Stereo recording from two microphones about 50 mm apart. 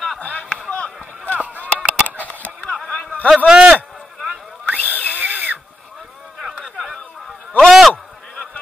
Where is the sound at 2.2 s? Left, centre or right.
Left.